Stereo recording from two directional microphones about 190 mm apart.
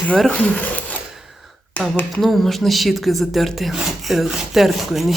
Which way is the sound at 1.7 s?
5° left (ahead or behind).